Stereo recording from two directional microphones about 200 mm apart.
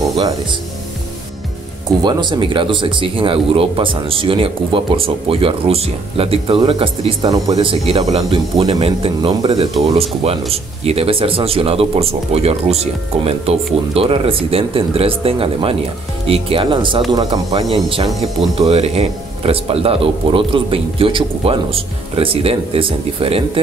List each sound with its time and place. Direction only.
1.9 s speech: 20° right (ahead or behind)